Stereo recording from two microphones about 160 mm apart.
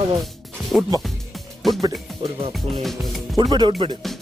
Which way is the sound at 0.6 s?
Centre (ahead or behind).